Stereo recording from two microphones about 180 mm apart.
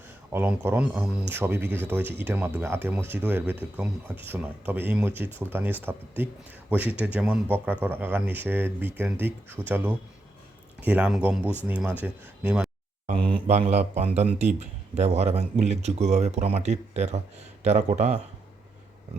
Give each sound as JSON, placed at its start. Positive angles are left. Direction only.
{"t": 0.3, "sound": "speech", "side_deg": -10}
{"t": 13.1, "sound": "speech", "side_deg": -30}